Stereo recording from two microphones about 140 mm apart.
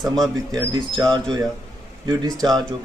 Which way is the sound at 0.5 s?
30° right (ahead or behind).